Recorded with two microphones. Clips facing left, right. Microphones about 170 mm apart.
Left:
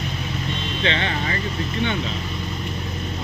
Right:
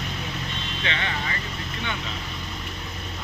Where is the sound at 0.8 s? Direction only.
30° left (ahead or behind).